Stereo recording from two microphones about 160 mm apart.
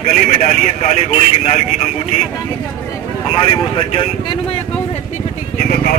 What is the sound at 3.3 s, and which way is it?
Speech, 30° left (ahead or behind).